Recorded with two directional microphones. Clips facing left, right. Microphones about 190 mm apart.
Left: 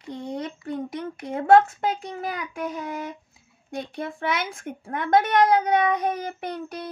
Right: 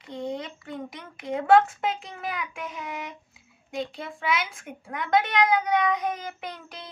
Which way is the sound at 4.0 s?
50° left (ahead or behind).